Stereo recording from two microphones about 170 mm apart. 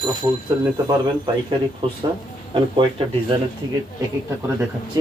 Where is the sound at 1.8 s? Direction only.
30° right (ahead or behind).